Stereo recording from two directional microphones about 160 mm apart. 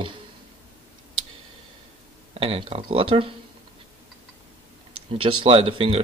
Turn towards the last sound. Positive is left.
turn(degrees=-35)  # may be behind; listen again after turning